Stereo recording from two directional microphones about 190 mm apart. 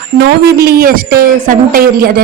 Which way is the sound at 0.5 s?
55° right (ahead or behind).